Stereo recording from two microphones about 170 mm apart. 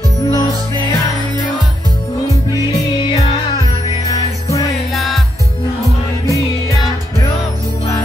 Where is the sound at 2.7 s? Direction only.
35° left (ahead or behind).